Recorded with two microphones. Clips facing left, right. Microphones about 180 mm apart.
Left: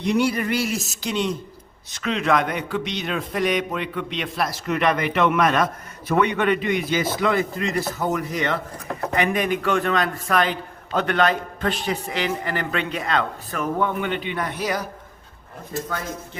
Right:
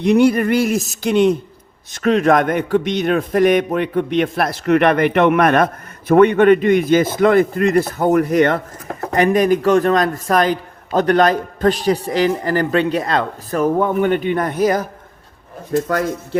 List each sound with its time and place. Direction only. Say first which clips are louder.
0.0 s a sound: right 8 dB; 55° right (ahead or behind)
1.9 s a man's voice: right 8 dB; 50° right (ahead or behind)
9.1 s a man's voice: right 9 dB; 40° right (ahead or behind)
15.7 s speech: right 11 dB; 75° right (ahead or behind)